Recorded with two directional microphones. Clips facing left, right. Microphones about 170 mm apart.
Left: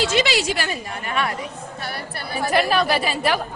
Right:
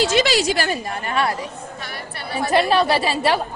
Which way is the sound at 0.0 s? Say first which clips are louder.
Right 3 dB; 40° right (ahead or behind).